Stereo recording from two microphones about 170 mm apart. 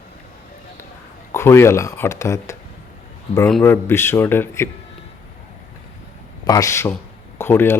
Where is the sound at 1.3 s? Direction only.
15° left (ahead or behind).